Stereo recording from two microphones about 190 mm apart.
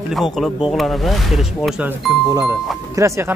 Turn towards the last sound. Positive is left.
turn(degrees=-15)  # may be behind; listen again after turning